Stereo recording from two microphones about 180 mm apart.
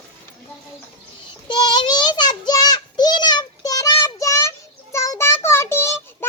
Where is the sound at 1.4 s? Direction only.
25° left (ahead or behind).